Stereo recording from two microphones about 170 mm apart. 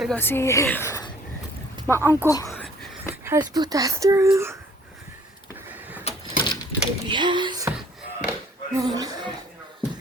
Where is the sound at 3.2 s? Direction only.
20° right (ahead or behind).